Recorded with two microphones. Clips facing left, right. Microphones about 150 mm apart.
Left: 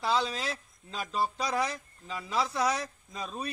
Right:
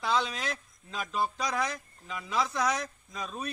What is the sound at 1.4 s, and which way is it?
A man's voice, 30° left (ahead or behind).